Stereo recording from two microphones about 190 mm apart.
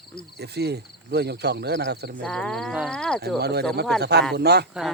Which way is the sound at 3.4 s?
60° right (ahead or behind).